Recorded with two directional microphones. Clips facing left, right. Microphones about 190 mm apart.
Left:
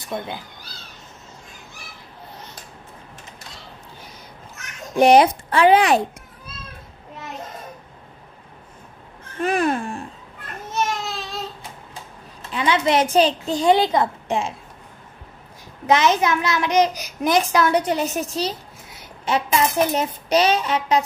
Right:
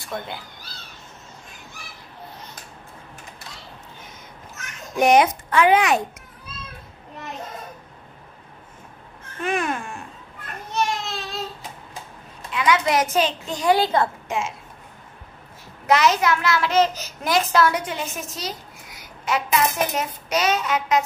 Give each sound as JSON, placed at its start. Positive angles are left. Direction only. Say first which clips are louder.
{"t": 0.0, "sound": "speech", "louder": "left 3 dB", "side_deg": 20}
{"t": 4.9, "sound": "a woman's voice", "louder": "left 3 dB", "side_deg": 30}
{"t": 9.4, "sound": "speech", "louder": "left 4 dB", "side_deg": 35}
{"t": 10.7, "sound": "a sound", "louder": "even", "side_deg": 0}
{"t": 12.4, "sound": "a woman's voice", "louder": "left 1 dB", "side_deg": 30}
{"t": 13.7, "sound": "a woman's voice", "louder": "left 1 dB", "side_deg": 20}
{"t": 14.2, "sound": "a woman's voice", "louder": "left 3 dB", "side_deg": 35}
{"t": 15.9, "sound": "a child's voice", "louder": "left 1 dB", "side_deg": 20}
{"t": 17.7, "sound": "a woman's voice", "louder": "left 7 dB", "side_deg": 35}